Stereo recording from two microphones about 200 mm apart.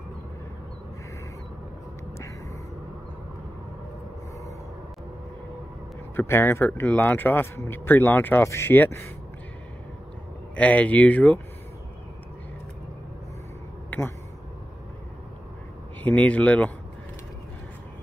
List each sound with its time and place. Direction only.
6.1 s speech: 10° left (ahead or behind)
10.5 s speech: 5° left (ahead or behind)
13.8 s a sound: 10° left (ahead or behind)
16.0 s speech: 5° left (ahead or behind)